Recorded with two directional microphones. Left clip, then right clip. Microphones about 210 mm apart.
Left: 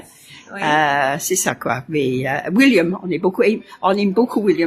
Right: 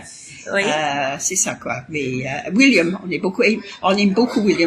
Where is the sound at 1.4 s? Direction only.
45° left (ahead or behind).